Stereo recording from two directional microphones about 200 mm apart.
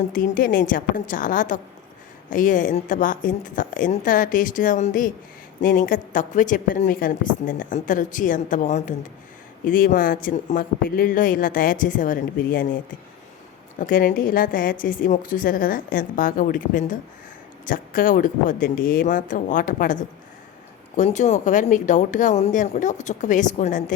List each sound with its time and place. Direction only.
0.1 s a woman's voice: 45° left (ahead or behind)